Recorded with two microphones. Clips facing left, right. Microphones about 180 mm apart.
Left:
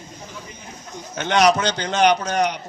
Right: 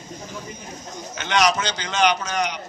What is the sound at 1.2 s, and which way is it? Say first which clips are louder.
A man's voice: left 4 dB; 55° left (ahead or behind).